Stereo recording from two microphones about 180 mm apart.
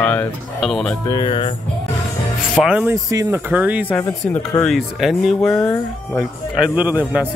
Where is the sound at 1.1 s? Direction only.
30° left (ahead or behind).